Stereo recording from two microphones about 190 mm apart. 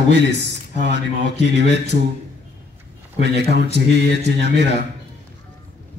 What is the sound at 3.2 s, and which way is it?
A man's voice, 60° right (ahead or behind).